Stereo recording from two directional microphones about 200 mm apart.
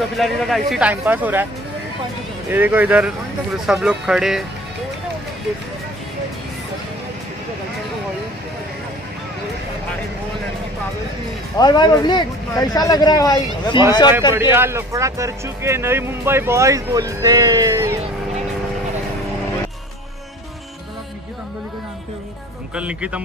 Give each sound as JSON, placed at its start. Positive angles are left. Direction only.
{"t": 0.2, "sound": "a man's voice", "side_deg": 0}
{"t": 2.5, "sound": "a man's voice", "side_deg": -10}
{"t": 11.5, "sound": "speech", "side_deg": 20}
{"t": 14.5, "sound": "a man's voice", "side_deg": -10}
{"t": 22.8, "sound": "a man's voice", "side_deg": -5}